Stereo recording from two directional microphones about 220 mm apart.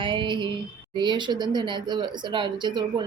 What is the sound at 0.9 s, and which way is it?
Speech, 20° right (ahead or behind).